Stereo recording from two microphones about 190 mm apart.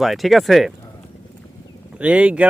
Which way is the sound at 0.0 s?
Centre (ahead or behind).